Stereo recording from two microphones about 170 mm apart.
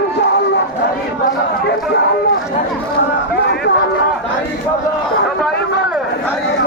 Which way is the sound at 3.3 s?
80° left.